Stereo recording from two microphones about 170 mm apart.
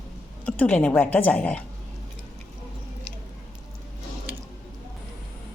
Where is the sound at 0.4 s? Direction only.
10° left (ahead or behind).